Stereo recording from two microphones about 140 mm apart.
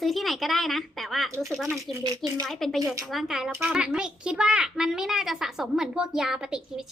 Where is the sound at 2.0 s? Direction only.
30° right (ahead or behind).